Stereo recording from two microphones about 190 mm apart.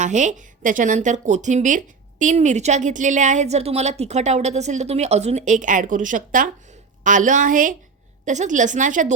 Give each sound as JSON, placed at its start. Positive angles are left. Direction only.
{"t": 0.0, "sound": "a woman's voice", "side_deg": -40}